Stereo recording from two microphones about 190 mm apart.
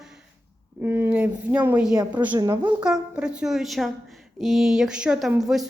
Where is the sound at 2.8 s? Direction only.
5° right (ahead or behind).